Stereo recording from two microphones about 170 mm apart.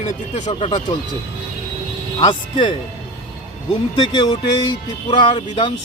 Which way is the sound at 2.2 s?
25° left (ahead or behind).